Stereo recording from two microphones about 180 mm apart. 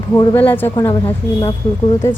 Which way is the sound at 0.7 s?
25° left (ahead or behind).